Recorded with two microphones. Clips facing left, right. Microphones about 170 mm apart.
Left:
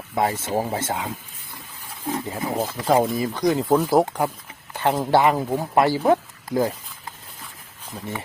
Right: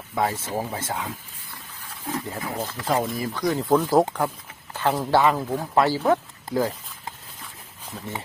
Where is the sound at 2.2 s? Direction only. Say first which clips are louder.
Left 5 dB; 20° left (ahead or behind).